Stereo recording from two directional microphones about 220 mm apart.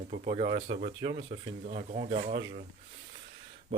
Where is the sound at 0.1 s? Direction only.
30° right (ahead or behind).